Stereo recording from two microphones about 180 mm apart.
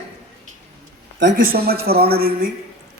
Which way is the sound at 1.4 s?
55° right (ahead or behind).